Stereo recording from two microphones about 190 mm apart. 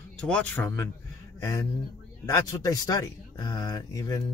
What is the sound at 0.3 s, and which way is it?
Speech, 5° left (ahead or behind).